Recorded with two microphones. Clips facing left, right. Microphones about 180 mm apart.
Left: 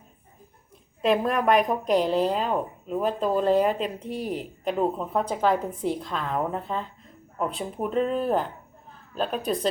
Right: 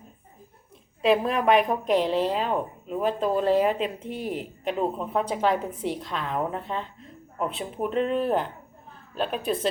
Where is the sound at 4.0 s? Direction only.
40° left (ahead or behind).